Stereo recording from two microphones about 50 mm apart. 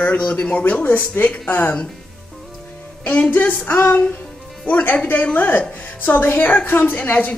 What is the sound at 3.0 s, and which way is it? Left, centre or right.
Speech, left.